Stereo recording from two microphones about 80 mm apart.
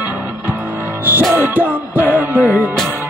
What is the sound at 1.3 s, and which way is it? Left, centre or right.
Music, right.